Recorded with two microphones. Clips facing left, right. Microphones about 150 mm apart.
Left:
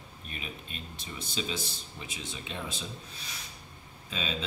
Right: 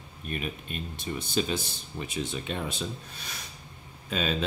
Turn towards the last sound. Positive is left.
turn(degrees=-55)  # may be behind; listen again after turning